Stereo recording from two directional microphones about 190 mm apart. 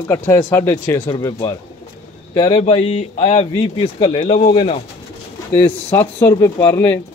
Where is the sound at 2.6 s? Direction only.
30° left (ahead or behind).